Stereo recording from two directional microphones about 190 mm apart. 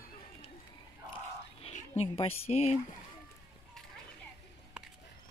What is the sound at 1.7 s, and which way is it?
A woman's voice, 30° left (ahead or behind).